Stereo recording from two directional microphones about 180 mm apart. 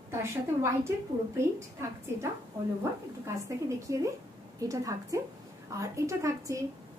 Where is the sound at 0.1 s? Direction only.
15° right (ahead or behind).